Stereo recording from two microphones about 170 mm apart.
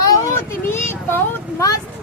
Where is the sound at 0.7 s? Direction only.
15° left (ahead or behind).